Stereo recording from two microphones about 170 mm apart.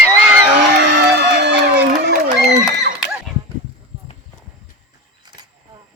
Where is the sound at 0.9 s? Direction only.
85° right.